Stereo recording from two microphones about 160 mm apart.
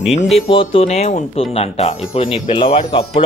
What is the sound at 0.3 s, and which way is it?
Speech, 35° left (ahead or behind).